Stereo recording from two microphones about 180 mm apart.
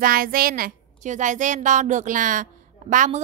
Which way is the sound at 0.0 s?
55° right (ahead or behind).